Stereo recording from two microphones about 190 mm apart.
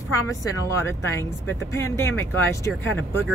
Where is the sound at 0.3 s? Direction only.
15° left (ahead or behind).